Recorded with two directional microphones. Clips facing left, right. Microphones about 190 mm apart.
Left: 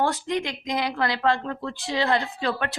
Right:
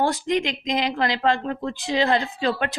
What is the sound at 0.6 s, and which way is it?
A woman's voice, 20° right (ahead or behind).